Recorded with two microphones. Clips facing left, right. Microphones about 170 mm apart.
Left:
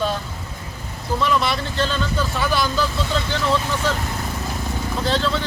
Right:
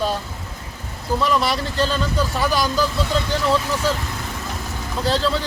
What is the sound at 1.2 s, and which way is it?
Speech, 35° right (ahead or behind).